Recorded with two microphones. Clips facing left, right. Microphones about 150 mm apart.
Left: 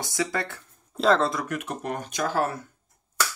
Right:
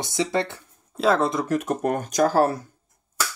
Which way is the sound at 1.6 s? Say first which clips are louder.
Right 7 dB; 45° right (ahead or behind).